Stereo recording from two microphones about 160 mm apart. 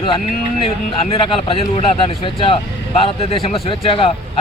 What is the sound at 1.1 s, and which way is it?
Speech, 35° left (ahead or behind).